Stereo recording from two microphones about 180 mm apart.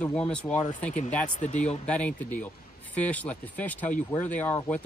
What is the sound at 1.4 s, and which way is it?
Speech, 40° left (ahead or behind).